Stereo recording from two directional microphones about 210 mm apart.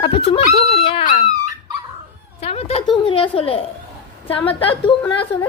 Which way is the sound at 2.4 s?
30° left (ahead or behind).